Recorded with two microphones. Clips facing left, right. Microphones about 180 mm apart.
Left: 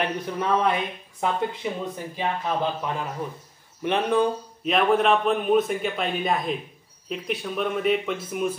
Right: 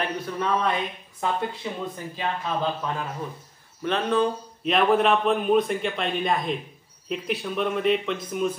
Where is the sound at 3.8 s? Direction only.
15° left (ahead or behind).